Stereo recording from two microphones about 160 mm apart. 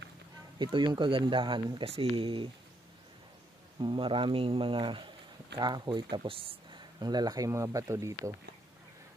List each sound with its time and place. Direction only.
0.6 s speech: 30° right (ahead or behind)
3.8 s speech: 30° right (ahead or behind)